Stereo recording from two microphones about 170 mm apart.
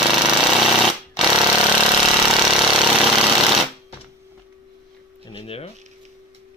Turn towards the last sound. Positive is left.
turn(degrees=35)  # may be behind; listen again after turning